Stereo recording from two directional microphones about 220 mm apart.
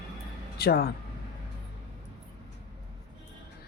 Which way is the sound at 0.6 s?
45° left (ahead or behind).